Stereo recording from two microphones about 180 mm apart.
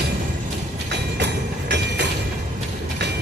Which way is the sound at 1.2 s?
70° right (ahead or behind).